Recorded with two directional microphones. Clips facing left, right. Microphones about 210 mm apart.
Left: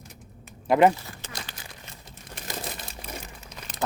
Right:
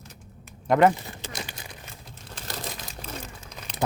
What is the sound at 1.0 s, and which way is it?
Crumpling, 20° right (ahead or behind).